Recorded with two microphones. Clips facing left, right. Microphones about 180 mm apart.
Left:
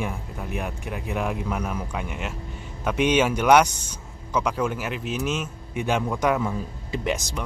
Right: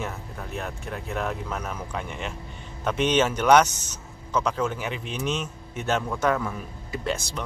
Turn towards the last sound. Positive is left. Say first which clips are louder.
# left 2 dB
turn(degrees=15)  # may be behind; listen again after turning